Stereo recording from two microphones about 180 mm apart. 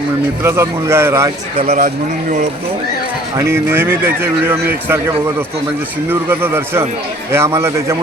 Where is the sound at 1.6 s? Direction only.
40° right (ahead or behind).